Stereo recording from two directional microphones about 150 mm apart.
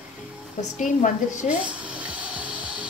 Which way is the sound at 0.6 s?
55° left (ahead or behind).